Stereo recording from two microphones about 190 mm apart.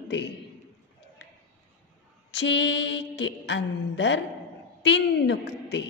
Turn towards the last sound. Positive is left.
turn(degrees=65)  # may be behind; listen again after turning